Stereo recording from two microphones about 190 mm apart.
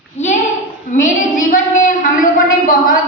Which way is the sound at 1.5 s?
45° left (ahead or behind).